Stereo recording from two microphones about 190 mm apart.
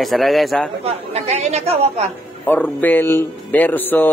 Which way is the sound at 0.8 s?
35° right (ahead or behind).